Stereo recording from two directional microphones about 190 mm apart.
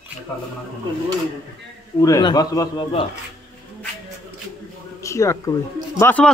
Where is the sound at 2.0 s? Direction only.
20° left (ahead or behind).